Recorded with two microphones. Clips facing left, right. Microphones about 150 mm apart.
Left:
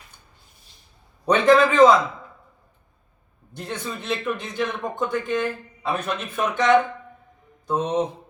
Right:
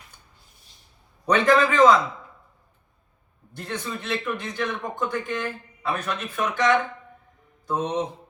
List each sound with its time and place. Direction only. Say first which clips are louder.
1.2 s speech: left 3 dB; 25° left (ahead or behind)
3.5 s speech: left 1 dB; 20° left (ahead or behind)